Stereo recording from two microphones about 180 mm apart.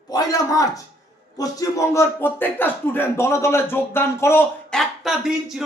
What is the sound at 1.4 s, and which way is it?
Speech, 20° left (ahead or behind).